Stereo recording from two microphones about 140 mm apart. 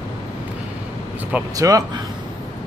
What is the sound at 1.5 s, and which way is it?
Speech, 25° right (ahead or behind).